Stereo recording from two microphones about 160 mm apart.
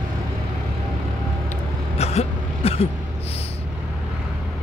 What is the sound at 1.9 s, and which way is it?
Vehicle, 40° left (ahead or behind).